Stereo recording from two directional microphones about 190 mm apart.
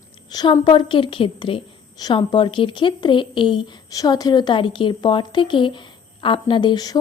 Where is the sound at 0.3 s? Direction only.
20° left (ahead or behind).